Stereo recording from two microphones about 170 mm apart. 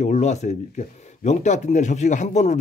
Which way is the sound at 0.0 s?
40° left (ahead or behind).